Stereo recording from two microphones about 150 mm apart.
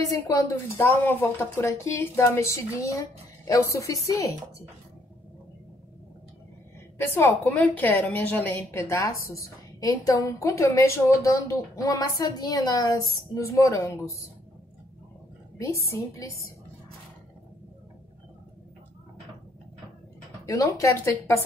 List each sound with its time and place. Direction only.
0.3 s a woman's voice: 20° left (ahead or behind)
7.0 s a woman's voice: 15° left (ahead or behind)
15.5 s a woman's voice: 20° left (ahead or behind)
20.4 s a woman's voice: 20° left (ahead or behind)